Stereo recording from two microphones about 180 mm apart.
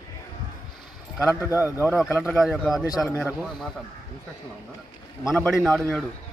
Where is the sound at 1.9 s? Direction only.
5° left (ahead or behind).